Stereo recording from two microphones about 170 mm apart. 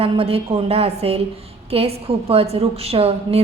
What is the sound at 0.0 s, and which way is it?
A woman's voice, 35° right (ahead or behind).